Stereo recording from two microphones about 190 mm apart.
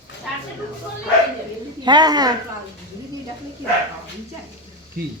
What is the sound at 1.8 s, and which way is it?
Speech, 20° right (ahead or behind).